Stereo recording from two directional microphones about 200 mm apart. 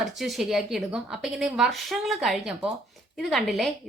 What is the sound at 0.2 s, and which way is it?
A woman's voice, centre (ahead or behind).